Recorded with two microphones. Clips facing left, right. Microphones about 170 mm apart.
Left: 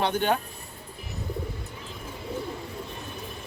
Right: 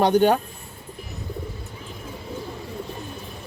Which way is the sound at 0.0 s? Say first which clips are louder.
Right 8 dB; 40° right (ahead or behind).